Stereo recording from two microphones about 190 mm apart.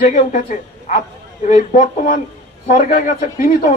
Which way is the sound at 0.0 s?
45° left (ahead or behind).